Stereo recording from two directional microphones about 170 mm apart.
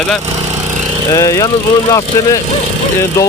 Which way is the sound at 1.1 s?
20° left (ahead or behind).